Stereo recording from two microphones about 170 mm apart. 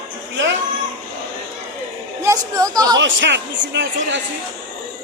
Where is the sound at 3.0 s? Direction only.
90° right.